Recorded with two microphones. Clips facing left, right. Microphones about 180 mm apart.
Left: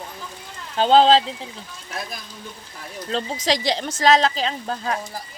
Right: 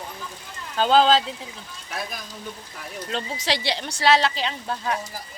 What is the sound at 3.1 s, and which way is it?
A woman's voice, 40° left (ahead or behind).